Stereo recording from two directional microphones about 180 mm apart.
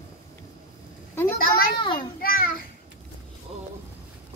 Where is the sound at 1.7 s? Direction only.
25° left (ahead or behind).